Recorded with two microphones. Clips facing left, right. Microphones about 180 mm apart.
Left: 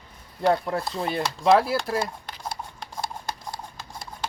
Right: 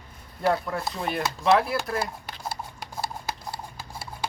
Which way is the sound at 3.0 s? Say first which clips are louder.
Even; 5° right (ahead or behind).